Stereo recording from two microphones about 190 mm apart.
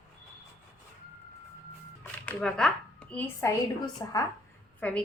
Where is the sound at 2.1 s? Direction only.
5° left (ahead or behind).